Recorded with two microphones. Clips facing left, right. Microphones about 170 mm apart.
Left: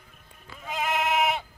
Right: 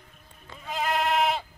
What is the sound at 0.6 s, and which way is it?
Bleat, centre (ahead or behind).